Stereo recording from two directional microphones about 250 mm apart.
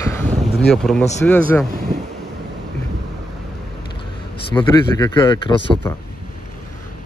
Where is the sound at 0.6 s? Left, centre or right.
Centre.